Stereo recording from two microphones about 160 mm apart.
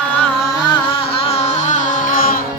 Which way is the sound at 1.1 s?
40° left (ahead or behind).